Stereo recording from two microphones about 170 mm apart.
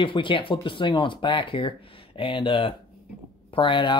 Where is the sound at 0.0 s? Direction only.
30° left (ahead or behind).